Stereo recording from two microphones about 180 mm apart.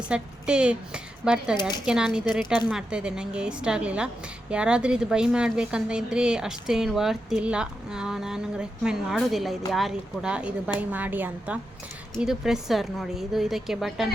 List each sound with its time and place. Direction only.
0.1 s a woman's voice: 5° right (ahead or behind)
1.5 s speech: 25° left (ahead or behind)
1.8 s a woman's voice: 5° right (ahead or behind)